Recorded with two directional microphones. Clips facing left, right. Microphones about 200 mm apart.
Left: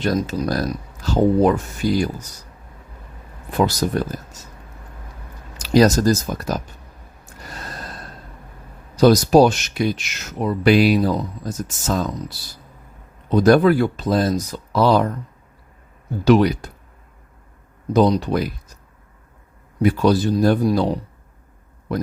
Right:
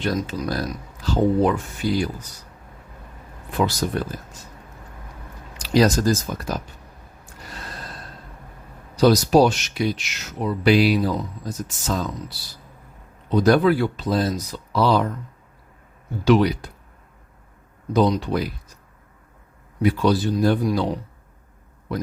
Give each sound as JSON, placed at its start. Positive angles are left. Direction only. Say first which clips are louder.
{"t": 0.0, "sound": "speech", "louder": "left 4 dB", "side_deg": 40}
{"t": 3.5, "sound": "speech", "louder": "left 3 dB", "side_deg": 40}
{"t": 5.5, "sound": "speech", "louder": "left 3 dB", "side_deg": 45}
{"t": 9.0, "sound": "speech", "louder": "left 3 dB", "side_deg": 45}
{"t": 13.3, "sound": "speech", "louder": "left 3 dB", "side_deg": 50}
{"t": 16.2, "sound": "speech", "louder": "left 3 dB", "side_deg": 45}
{"t": 17.9, "sound": "speech", "louder": "left 3 dB", "side_deg": 40}
{"t": 19.8, "sound": "speech", "louder": "left 3 dB", "side_deg": 45}